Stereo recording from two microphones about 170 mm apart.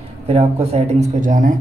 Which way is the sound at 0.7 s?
45° right (ahead or behind).